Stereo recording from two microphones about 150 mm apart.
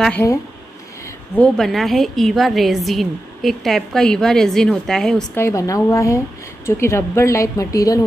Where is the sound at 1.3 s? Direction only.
5° left (ahead or behind).